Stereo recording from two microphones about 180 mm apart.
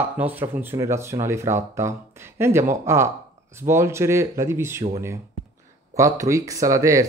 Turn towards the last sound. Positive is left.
turn(degrees=-15)  # may be behind; listen again after turning